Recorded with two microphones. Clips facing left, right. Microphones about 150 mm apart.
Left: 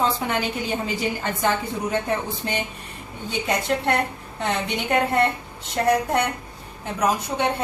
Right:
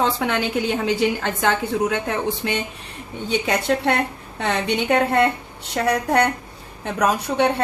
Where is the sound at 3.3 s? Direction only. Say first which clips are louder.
Right 3 dB; 75° right (ahead or behind).